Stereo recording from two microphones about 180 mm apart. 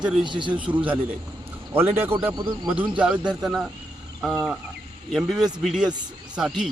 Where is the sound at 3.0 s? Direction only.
5° right (ahead or behind).